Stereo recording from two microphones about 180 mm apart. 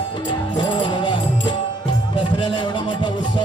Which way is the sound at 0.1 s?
25° left (ahead or behind).